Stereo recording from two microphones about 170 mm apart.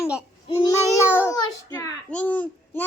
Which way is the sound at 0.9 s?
15° left (ahead or behind).